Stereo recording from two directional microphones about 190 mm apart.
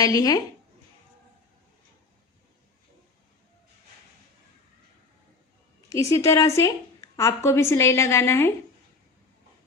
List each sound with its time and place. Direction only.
0.0 s speech: 20° left (ahead or behind)
5.9 s a woman's voice: 15° left (ahead or behind)